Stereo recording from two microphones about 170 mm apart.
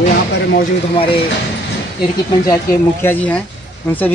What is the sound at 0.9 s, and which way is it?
Speech, 35° left (ahead or behind).